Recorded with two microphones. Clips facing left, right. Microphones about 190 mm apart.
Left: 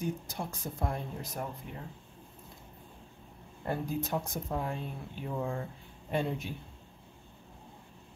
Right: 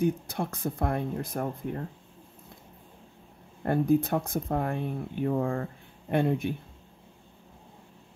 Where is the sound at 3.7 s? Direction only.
55° right (ahead or behind).